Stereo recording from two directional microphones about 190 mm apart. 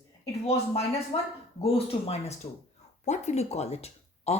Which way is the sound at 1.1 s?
30° left (ahead or behind).